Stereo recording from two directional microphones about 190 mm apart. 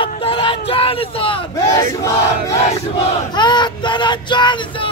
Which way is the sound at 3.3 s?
25° left (ahead or behind).